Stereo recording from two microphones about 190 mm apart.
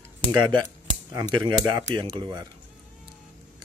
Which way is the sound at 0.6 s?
20° right (ahead or behind).